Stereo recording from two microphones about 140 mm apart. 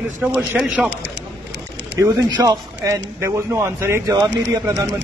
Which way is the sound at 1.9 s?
20° right (ahead or behind).